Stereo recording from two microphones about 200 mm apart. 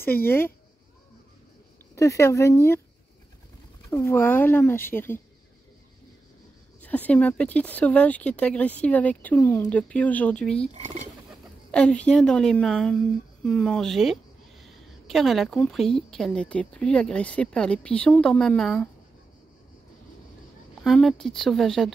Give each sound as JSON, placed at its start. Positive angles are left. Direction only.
{"t": 0.2, "sound": "speech", "side_deg": 10}
{"t": 2.0, "sound": "speech", "side_deg": 15}
{"t": 3.9, "sound": "speech", "side_deg": 10}
{"t": 6.8, "sound": "speech", "side_deg": 5}
{"t": 10.7, "sound": "speech", "side_deg": -30}
{"t": 11.7, "sound": "a woman's voice", "side_deg": 5}
{"t": 20.8, "sound": "a woman's voice", "side_deg": 0}